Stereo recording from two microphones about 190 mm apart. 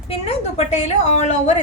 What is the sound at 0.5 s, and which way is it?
A woman's voice, 35° left (ahead or behind).